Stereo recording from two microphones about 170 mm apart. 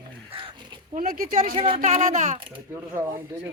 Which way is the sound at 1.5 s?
30° right (ahead or behind).